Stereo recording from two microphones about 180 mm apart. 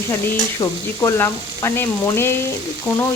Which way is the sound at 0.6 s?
15° left (ahead or behind).